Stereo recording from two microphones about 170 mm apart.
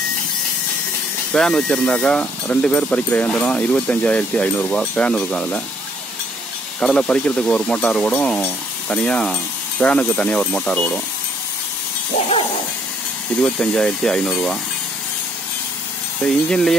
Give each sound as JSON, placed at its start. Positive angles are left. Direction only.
{"t": 1.3, "sound": "speech", "side_deg": 5}
{"t": 6.8, "sound": "speech", "side_deg": 5}
{"t": 12.1, "sound": "dog", "side_deg": 35}
{"t": 13.4, "sound": "speech", "side_deg": 5}
{"t": 16.2, "sound": "speech", "side_deg": 5}